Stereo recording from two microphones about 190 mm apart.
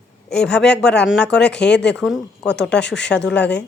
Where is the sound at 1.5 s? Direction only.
65° left (ahead or behind).